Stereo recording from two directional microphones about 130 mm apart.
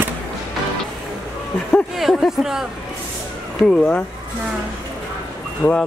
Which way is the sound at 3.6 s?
5° left (ahead or behind).